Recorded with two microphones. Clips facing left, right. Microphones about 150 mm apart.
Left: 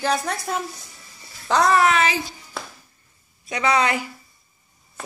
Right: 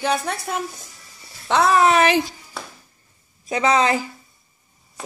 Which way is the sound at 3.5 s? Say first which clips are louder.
Right 3 dB; 30° right (ahead or behind).